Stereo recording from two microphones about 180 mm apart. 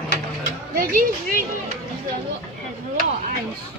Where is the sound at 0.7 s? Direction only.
50° right (ahead or behind).